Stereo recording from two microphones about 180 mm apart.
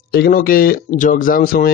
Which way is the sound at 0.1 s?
55° left (ahead or behind).